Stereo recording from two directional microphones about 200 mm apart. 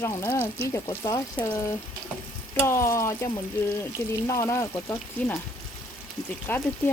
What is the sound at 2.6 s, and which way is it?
Speech, 15° left (ahead or behind).